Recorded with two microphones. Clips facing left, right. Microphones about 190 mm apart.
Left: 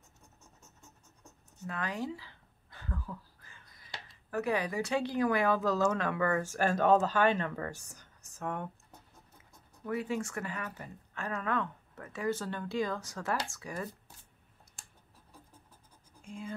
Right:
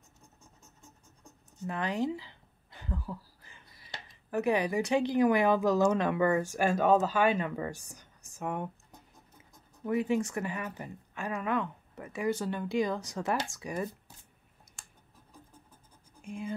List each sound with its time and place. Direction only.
1.6 s speech: 20° right (ahead or behind)
9.8 s speech: 20° right (ahead or behind)
16.2 s speech: 15° right (ahead or behind)